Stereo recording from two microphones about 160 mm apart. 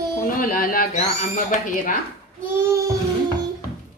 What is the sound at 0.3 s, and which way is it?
Speech, 60° left (ahead or behind).